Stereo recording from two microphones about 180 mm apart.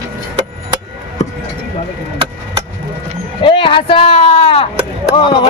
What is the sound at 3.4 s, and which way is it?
Speech, 30° left (ahead or behind).